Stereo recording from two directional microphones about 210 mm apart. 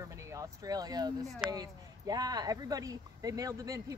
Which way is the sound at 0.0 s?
15° right (ahead or behind).